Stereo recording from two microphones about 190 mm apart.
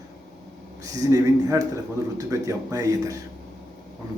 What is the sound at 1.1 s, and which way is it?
A man's voice, 20° right (ahead or behind).